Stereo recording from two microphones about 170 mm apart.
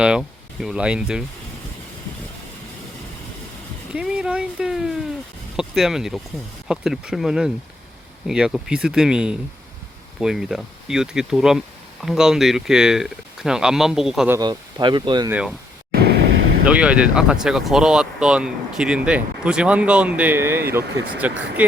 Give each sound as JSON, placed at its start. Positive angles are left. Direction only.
{"t": 0.0, "sound": "speech", "side_deg": -5}
{"t": 3.9, "sound": "speech", "side_deg": -5}
{"t": 14.3, "sound": "speech", "side_deg": -20}
{"t": 15.3, "sound": "speech", "side_deg": -5}
{"t": 15.9, "sound": "vehicle", "side_deg": -70}
{"t": 16.6, "sound": "speech", "side_deg": -5}